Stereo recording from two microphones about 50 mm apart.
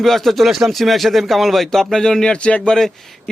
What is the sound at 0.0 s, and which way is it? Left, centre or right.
A man's voice, centre.